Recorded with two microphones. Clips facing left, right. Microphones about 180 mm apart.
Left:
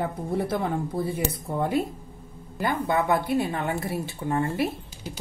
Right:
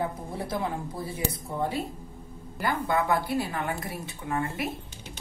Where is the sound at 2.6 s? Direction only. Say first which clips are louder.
Left 2 dB; 20° left (ahead or behind).